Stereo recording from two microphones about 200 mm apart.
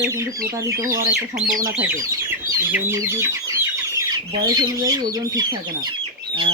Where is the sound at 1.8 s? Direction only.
10° right (ahead or behind).